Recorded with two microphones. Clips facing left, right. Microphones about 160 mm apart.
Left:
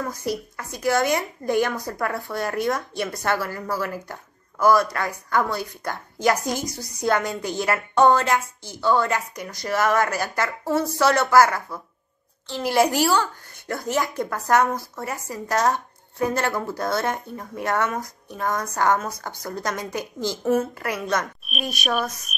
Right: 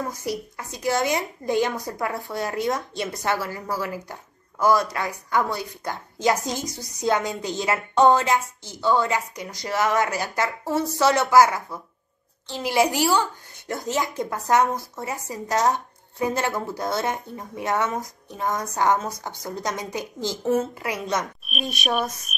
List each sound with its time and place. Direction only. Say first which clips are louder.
0.0 s a woman's voice: left 1 dB; 20° right (ahead or behind)
21.5 s speech: even; centre (ahead or behind)